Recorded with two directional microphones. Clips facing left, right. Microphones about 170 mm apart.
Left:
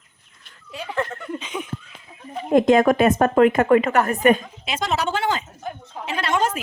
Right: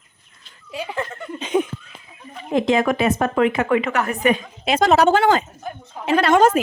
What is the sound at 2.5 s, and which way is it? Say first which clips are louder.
A woman's voice: left 3 dB; 50° left (ahead or behind).